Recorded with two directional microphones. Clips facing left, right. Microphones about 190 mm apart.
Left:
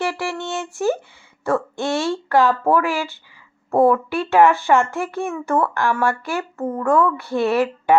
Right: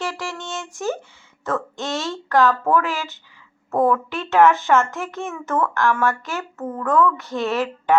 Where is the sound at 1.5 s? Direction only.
15° left (ahead or behind).